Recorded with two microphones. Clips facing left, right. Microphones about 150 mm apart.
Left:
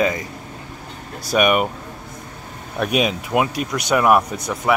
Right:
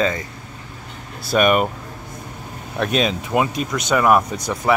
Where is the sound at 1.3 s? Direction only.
5° left (ahead or behind).